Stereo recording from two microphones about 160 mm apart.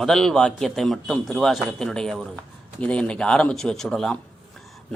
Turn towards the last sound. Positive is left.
turn(degrees=5)  # may be behind; listen again after turning